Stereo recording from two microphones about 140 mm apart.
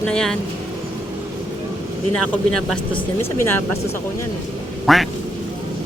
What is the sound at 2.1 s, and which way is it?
Speech, 5° left (ahead or behind).